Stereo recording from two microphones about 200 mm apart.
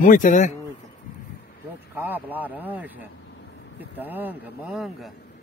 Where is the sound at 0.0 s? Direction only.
40° left (ahead or behind).